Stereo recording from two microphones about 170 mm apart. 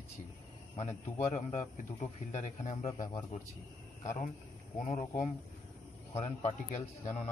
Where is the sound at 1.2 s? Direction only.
40° left (ahead or behind).